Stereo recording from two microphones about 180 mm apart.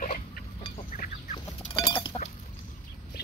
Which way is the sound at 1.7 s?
30° left (ahead or behind).